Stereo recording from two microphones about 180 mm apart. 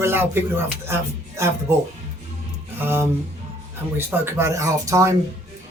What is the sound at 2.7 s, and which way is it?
Speech, 10° right (ahead or behind).